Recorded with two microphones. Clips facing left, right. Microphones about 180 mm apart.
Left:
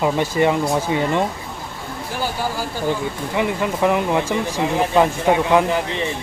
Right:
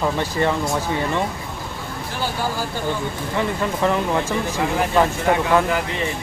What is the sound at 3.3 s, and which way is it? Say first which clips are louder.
Speech: left 2 dB; 15° left (ahead or behind).